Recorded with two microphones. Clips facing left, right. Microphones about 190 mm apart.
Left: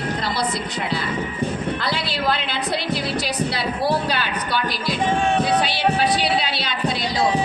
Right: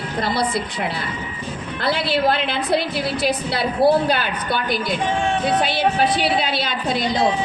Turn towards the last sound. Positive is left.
turn(degrees=-50)  # may be behind; listen again after turning